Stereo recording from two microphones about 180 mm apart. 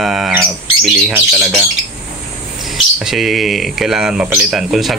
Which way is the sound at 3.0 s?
Centre (ahead or behind).